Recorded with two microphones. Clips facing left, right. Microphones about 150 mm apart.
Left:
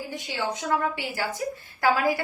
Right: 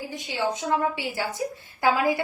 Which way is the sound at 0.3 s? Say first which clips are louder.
Right 2 dB; 20° right (ahead or behind).